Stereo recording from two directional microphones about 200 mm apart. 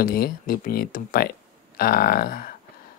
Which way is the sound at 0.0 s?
45° left (ahead or behind).